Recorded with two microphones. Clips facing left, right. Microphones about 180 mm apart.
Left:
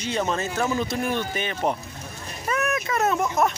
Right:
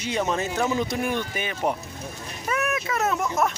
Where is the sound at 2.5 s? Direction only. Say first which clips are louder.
Left 1 dB; 5° right (ahead or behind).